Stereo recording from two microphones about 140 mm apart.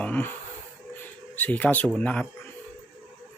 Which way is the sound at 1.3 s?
10° left (ahead or behind).